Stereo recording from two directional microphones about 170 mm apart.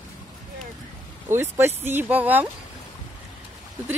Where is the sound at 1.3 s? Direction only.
15° right (ahead or behind).